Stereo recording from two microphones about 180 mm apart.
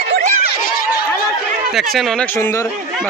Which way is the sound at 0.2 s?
45° right (ahead or behind).